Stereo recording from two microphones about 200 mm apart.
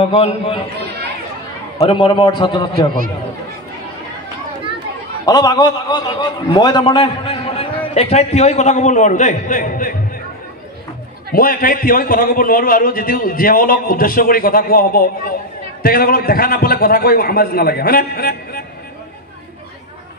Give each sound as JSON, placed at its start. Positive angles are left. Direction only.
{"t": 0.0, "sound": "a man's voice", "side_deg": 30}
{"t": 1.8, "sound": "a man's voice", "side_deg": 25}
{"t": 5.2, "sound": "a man's voice", "side_deg": 20}
{"t": 11.3, "sound": "a man's voice", "side_deg": 45}